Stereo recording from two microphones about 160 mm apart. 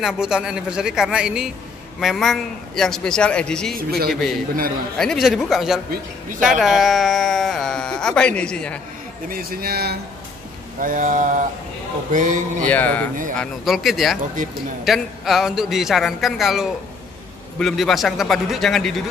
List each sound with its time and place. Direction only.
0.0 s speech: 5° right (ahead or behind)
3.7 s speech: 70° right (ahead or behind)
4.1 s speech: centre (ahead or behind)
9.3 s speech: 70° right (ahead or behind)
10.8 s a sound: 55° right (ahead or behind)
12.6 s speech: 10° left (ahead or behind)
13.4 s speech: centre (ahead or behind)